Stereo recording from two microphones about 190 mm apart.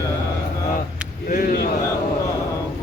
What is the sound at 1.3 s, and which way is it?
Speech, 50° left (ahead or behind).